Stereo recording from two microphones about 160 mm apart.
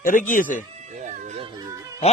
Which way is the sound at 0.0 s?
55° left (ahead or behind).